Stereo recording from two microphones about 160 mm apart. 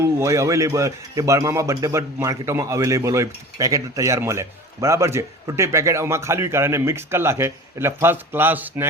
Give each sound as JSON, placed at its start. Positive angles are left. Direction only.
{"t": 0.0, "sound": "a man's voice", "side_deg": -15}